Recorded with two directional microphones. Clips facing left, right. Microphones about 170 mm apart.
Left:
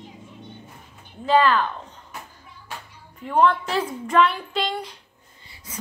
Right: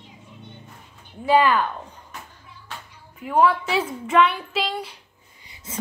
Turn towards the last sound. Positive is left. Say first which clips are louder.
# right 3 dB
turn(degrees=-20)  # may be behind; listen again after turning